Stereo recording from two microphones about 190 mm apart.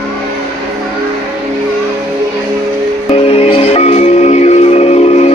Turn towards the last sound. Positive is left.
turn(degrees=35)  # may be behind; listen again after turning